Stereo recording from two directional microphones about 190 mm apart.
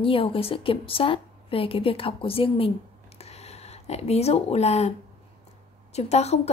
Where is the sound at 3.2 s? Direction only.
35° left (ahead or behind).